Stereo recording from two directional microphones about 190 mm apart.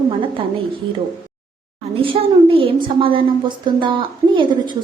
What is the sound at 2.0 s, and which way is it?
A woman's voice, 30° right (ahead or behind).